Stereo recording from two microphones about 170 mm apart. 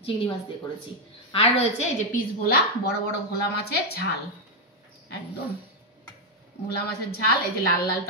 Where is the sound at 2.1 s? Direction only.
60° left (ahead or behind).